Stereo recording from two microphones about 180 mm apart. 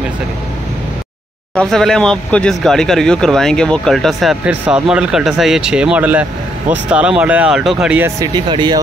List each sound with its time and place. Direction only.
1.5 s speech: 5° left (ahead or behind)
8.2 s speech: 25° right (ahead or behind)